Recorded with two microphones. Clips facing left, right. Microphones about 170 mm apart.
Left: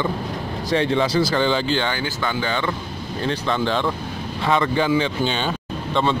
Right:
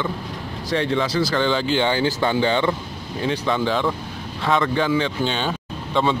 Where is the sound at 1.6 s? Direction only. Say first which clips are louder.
Right 3 dB; 20° right (ahead or behind).